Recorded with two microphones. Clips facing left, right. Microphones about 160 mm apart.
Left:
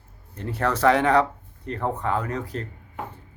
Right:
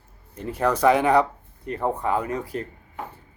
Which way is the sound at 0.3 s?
10° right (ahead or behind).